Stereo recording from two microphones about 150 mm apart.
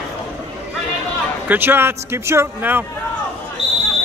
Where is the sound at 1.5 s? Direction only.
15° right (ahead or behind).